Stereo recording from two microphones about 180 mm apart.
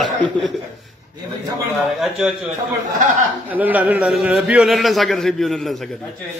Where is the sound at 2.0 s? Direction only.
Centre (ahead or behind).